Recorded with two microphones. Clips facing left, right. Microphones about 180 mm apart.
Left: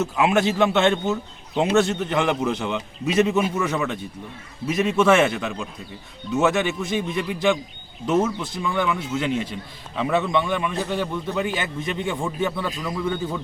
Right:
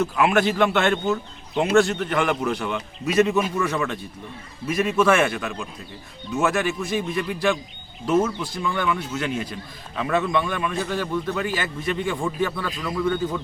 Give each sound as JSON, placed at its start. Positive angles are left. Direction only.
{"t": 0.0, "sound": "a man's voice", "side_deg": 20}